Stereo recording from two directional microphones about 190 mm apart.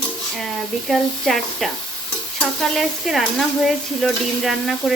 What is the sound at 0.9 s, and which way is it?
Speech, centre (ahead or behind).